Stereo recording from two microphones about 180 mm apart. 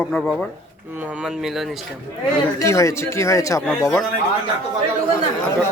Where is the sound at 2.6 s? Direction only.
15° left (ahead or behind).